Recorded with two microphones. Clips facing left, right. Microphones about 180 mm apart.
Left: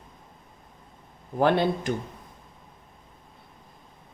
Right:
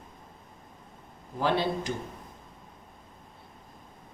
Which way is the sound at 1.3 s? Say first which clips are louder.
Left 5 dB; 55° left (ahead or behind).